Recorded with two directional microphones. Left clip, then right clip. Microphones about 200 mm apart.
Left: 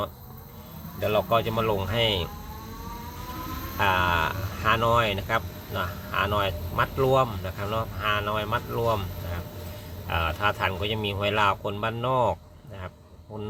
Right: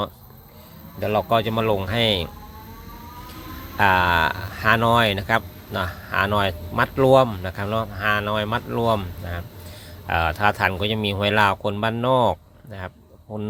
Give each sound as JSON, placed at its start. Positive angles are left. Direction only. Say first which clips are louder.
{"t": 0.9, "sound": "speech", "louder": "right 3 dB", "side_deg": -40}
{"t": 3.8, "sound": "speech", "louder": "right 6 dB", "side_deg": -45}